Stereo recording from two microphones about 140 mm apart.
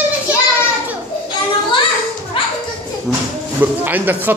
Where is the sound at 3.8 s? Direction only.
15° right (ahead or behind).